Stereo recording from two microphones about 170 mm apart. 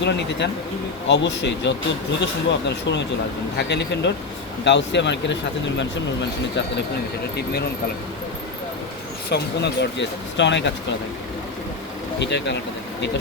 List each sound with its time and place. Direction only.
0.0 s speech: 90° left
9.3 s speech: 80° left
12.2 s speech: 90° left